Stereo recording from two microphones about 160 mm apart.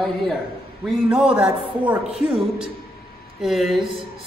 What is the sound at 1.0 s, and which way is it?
A man's voice, 5° right (ahead or behind).